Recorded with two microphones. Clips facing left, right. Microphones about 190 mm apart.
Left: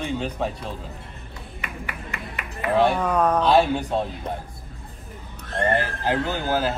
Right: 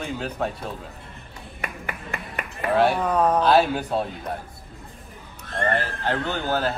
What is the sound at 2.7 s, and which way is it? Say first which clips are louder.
Speech: even; centre (ahead or behind).